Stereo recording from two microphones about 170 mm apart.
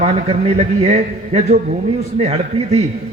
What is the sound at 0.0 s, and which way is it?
A man's voice, 35° right (ahead or behind).